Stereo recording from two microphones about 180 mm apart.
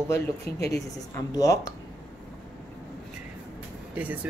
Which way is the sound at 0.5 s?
60° left (ahead or behind).